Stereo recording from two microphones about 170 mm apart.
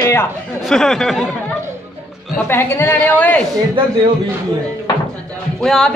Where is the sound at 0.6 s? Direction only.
Centre (ahead or behind).